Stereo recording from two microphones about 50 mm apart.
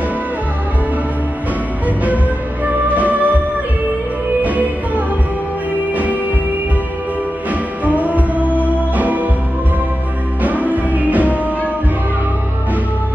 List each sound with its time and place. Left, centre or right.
2.6 s music: right
4.4 s music: right
7.8 s music: right
10.4 s music: right